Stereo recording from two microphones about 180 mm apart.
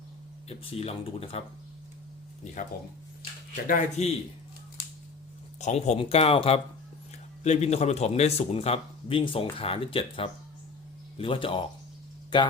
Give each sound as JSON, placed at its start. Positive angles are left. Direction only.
{"t": 0.4, "sound": "speech", "side_deg": 35}
{"t": 3.5, "sound": "speech", "side_deg": 45}
{"t": 5.5, "sound": "speech", "side_deg": 40}